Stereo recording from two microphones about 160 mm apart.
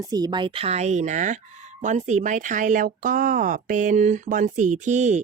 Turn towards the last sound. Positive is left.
turn(degrees=-45)  # may be behind; listen again after turning